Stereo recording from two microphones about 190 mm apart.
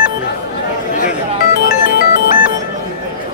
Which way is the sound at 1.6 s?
55° left (ahead or behind).